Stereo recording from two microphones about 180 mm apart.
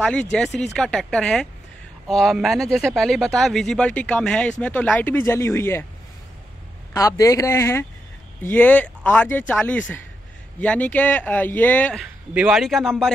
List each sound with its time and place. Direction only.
0.0 s speech: 5° left (ahead or behind)
6.9 s a man's voice: 20° left (ahead or behind); by 13.1 s centre (ahead or behind)